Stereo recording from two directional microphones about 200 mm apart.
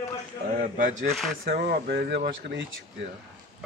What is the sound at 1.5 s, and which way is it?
Speech, 55° right (ahead or behind).